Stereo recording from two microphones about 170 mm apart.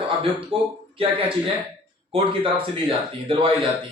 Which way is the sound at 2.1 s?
30° right (ahead or behind).